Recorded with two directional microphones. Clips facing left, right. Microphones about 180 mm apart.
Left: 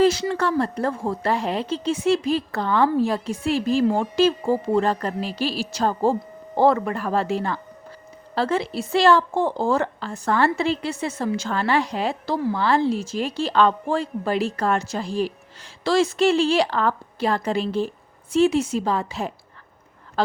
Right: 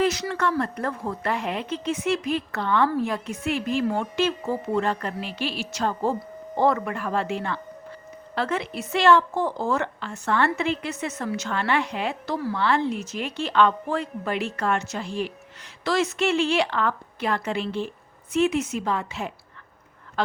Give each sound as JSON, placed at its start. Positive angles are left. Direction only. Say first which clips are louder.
{"t": 0.0, "sound": "a woman's voice", "louder": "left 5 dB", "side_deg": 30}